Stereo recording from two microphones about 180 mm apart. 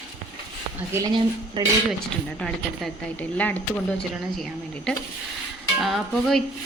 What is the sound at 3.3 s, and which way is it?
Speech, 10° left (ahead or behind).